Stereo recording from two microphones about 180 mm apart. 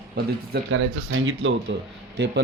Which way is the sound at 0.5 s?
90° right.